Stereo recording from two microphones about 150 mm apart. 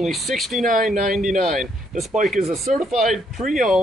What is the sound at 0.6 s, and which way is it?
Speech, 60° right (ahead or behind).